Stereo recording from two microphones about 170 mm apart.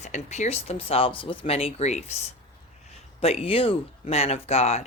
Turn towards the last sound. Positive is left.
turn(degrees=40)  # may be behind; listen again after turning